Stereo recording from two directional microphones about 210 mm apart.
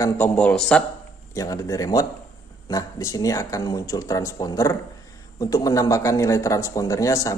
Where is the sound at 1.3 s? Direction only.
15° left (ahead or behind).